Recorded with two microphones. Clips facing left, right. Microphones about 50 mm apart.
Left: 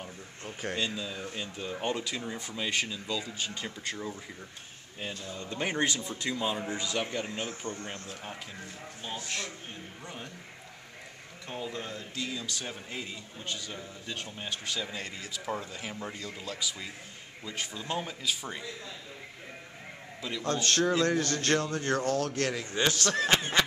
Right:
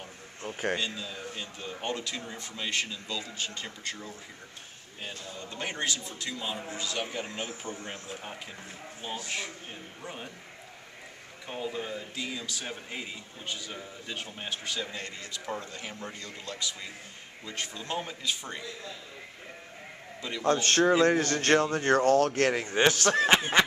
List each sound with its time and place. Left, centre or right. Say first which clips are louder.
0.7 s speech: left 1 dB; centre
1.9 s speech: left 1 dB; centre
5.6 s speech: left 3 dB; centre
6.4 s speech: left 4 dB; centre
6.7 s speech: left 2 dB; centre
7.0 s speech: even; centre
11.4 s speech: right 2 dB; centre
20.4 s speech: right 4 dB; right